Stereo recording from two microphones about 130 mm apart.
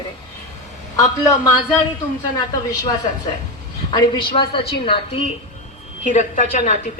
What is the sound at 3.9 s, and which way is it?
A woman's voice, 40° left (ahead or behind).